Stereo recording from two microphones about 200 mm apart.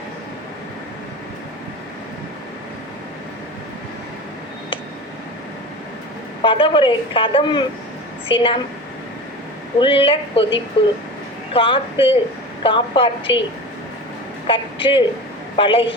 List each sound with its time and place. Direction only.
6.4 s speech: 25° left (ahead or behind)
9.7 s speech: 25° left (ahead or behind)
14.4 s a woman's voice: 25° left (ahead or behind)